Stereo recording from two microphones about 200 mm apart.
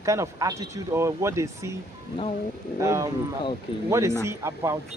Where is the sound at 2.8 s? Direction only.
15° right (ahead or behind).